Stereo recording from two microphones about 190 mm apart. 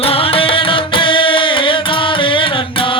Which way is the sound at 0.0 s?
30° left (ahead or behind).